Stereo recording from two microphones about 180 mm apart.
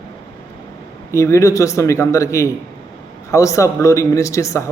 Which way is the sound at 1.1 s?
15° left (ahead or behind).